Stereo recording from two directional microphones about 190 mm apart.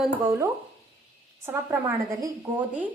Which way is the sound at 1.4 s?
15° right (ahead or behind).